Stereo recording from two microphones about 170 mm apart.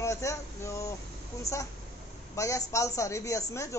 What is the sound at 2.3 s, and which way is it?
A man's voice, 20° left (ahead or behind).